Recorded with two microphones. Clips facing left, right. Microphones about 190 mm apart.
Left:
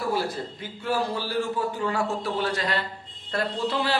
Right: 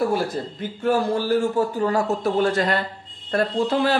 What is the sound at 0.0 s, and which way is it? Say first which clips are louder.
Speech: right 5 dB; 50° right (ahead or behind).